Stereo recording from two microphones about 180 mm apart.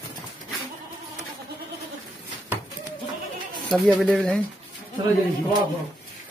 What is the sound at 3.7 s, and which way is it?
Speech, centre (ahead or behind).